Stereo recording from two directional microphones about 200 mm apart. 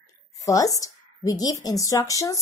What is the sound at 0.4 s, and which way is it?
A woman's voice, 15° left (ahead or behind).